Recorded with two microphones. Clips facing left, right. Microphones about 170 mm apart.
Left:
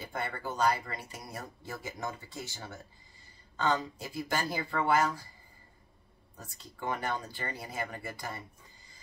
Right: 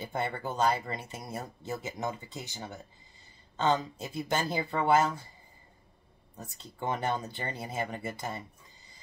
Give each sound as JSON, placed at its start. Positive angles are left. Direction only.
{"t": 0.0, "sound": "speech", "side_deg": -25}
{"t": 6.3, "sound": "speech", "side_deg": -25}